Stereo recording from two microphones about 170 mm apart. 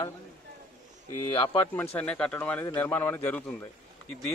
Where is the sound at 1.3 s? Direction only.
20° left (ahead or behind).